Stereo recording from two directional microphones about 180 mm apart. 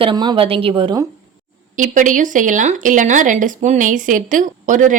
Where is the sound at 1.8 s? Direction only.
45° right (ahead or behind).